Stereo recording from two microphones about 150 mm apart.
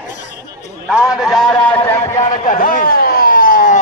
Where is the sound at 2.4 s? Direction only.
65° left (ahead or behind).